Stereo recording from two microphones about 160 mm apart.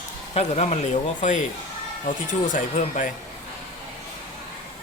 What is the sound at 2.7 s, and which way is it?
Speech, 55° left (ahead or behind).